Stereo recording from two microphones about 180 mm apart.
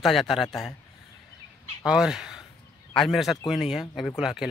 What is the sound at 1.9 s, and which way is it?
A man's voice, 5° right (ahead or behind).